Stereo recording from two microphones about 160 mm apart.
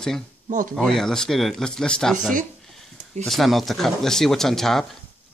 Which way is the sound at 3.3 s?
Centre (ahead or behind).